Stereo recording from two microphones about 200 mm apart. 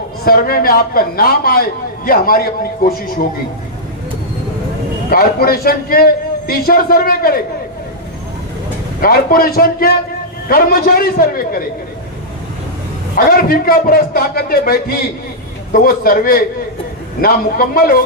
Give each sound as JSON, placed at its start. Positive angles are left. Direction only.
{"t": 0.3, "sound": "a man's voice", "side_deg": 50}
{"t": 5.0, "sound": "a man's voice", "side_deg": 50}
{"t": 9.0, "sound": "a man's voice", "side_deg": 45}
{"t": 13.1, "sound": "a man's voice", "side_deg": 45}